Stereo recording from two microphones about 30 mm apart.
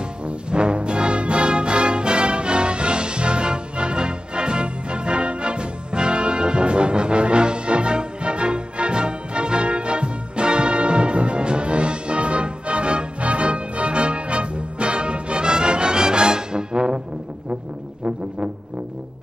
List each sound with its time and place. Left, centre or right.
0.2 s music: right